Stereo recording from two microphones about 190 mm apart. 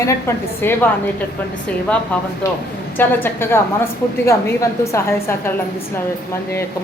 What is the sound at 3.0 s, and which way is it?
Speech, 10° left (ahead or behind).